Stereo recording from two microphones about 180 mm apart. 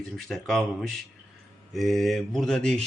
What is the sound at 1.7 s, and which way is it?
Speech, centre (ahead or behind).